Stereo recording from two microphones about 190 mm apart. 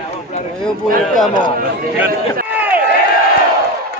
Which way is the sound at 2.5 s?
10° right (ahead or behind).